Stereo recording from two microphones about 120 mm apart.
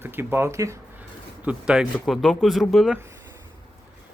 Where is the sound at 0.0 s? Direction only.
20° right (ahead or behind).